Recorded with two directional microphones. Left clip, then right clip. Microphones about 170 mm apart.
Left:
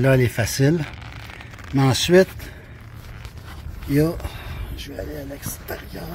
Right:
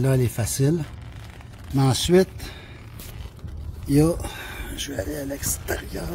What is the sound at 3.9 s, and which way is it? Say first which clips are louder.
Speech: right 1 dB; 50° right (ahead or behind).